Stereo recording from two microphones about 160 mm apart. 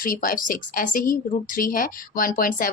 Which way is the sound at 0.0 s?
60° left (ahead or behind).